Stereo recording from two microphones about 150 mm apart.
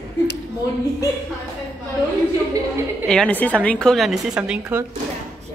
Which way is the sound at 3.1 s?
10° left (ahead or behind).